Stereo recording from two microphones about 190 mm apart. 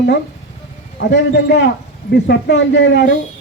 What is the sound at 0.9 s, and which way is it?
A man's voice, 65° left (ahead or behind).